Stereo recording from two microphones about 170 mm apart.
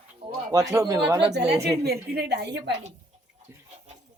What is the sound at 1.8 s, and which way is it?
Speech, 65° right (ahead or behind).